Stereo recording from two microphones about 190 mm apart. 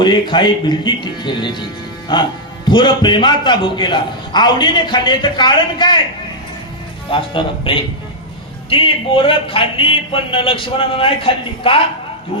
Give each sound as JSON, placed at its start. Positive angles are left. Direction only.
{"t": 0.0, "sound": "a man's voice", "side_deg": 25}
{"t": 7.1, "sound": "a man's voice", "side_deg": 25}